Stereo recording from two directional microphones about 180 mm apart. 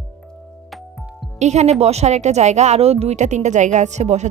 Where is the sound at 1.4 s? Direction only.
40° right (ahead or behind).